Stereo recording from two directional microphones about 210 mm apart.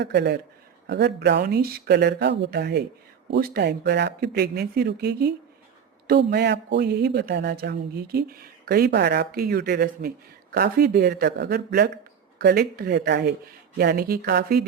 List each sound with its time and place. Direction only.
0.0 s speech: 55° right (ahead or behind)